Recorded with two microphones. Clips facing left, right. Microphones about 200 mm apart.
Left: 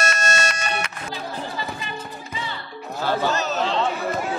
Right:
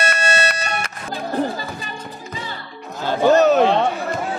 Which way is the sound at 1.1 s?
50° right (ahead or behind).